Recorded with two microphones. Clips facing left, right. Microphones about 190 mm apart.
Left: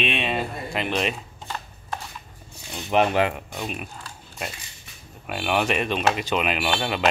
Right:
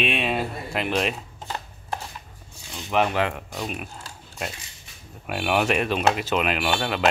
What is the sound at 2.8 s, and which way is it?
Speech, 20° left (ahead or behind).